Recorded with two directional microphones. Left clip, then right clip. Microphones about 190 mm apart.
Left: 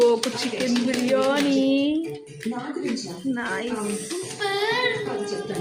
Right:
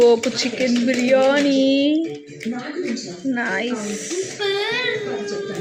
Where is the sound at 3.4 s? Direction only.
20° right (ahead or behind).